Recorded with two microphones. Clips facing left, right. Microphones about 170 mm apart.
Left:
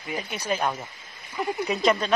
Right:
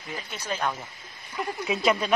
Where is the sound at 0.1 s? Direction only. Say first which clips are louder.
Left 5 dB; 10° left (ahead or behind).